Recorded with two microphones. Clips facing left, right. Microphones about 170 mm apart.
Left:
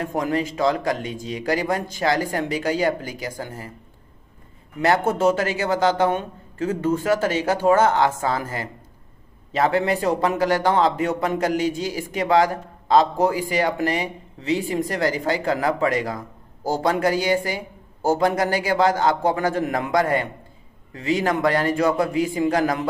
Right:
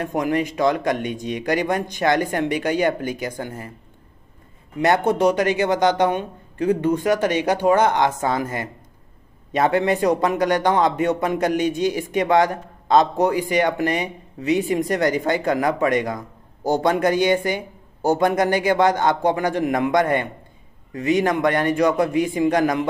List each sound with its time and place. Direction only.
0.6 s speech: 35° left (ahead or behind)
0.8 s speech: 20° right (ahead or behind)
4.8 s speech: 20° right (ahead or behind)